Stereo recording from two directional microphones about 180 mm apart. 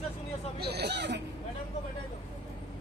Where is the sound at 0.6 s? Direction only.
65° right (ahead or behind).